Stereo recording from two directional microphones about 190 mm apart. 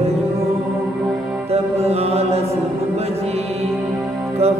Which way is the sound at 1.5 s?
35° right (ahead or behind).